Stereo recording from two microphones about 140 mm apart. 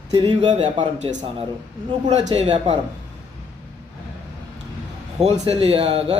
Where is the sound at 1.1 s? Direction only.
40° right (ahead or behind).